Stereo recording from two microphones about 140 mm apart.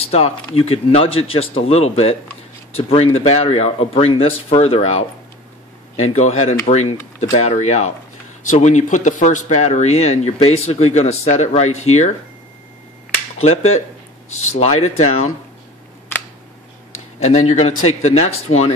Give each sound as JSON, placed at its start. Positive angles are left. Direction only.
{"t": 0.0, "sound": "speech", "side_deg": 45}
{"t": 13.4, "sound": "speech", "side_deg": 50}
{"t": 17.2, "sound": "speech", "side_deg": 55}